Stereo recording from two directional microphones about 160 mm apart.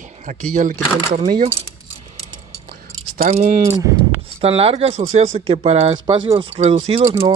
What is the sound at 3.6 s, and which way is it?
Speech, 20° right (ahead or behind).